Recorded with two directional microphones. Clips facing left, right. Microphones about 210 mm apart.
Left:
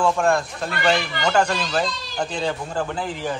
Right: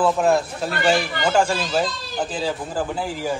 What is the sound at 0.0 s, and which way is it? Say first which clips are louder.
A man's voice: right 2 dB; 5° right (ahead or behind).